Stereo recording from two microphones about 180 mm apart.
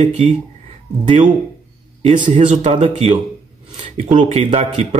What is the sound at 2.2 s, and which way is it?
Speech, 45° right (ahead or behind).